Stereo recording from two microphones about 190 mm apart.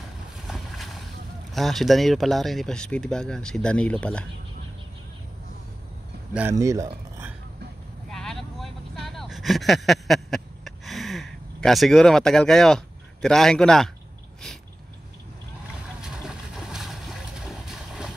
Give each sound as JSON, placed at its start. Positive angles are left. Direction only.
{"t": 0.5, "sound": "boat", "side_deg": 0}
{"t": 1.5, "sound": "speech", "side_deg": 0}
{"t": 6.5, "sound": "speech", "side_deg": -15}
{"t": 8.1, "sound": "vehicle", "side_deg": 0}
{"t": 16.0, "sound": "boat", "side_deg": 0}